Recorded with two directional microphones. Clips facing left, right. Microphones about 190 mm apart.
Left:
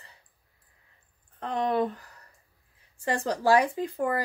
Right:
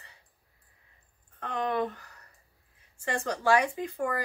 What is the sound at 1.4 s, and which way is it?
Speech, 35° left (ahead or behind).